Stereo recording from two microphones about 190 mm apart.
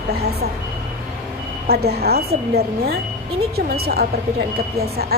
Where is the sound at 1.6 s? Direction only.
55° right (ahead or behind).